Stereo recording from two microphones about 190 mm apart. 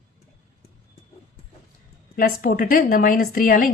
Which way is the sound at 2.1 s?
45° left (ahead or behind).